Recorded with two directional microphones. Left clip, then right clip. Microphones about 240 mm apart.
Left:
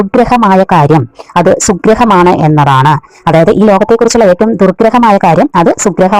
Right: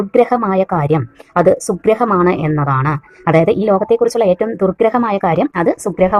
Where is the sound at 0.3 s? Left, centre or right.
Left.